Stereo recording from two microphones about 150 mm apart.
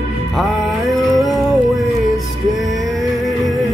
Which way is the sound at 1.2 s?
Centre (ahead or behind).